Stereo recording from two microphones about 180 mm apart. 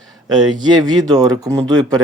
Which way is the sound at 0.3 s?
25° right (ahead or behind).